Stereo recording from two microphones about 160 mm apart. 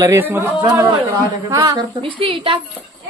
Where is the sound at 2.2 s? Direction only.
30° right (ahead or behind).